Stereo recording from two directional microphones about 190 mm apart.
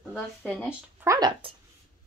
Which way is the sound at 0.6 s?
15° right (ahead or behind).